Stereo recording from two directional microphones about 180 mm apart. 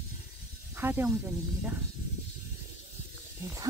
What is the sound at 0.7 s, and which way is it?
Speech, 10° right (ahead or behind).